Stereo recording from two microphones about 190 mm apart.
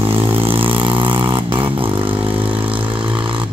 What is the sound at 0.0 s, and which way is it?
Vehicle, 30° right (ahead or behind).